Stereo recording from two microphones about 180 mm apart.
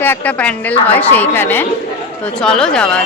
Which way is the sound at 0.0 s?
10° left (ahead or behind).